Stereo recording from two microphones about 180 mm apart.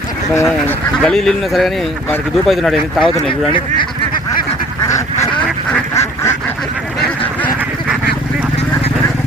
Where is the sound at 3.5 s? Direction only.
25° left (ahead or behind).